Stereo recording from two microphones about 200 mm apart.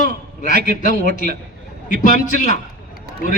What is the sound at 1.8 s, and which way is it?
Speech, 40° left (ahead or behind).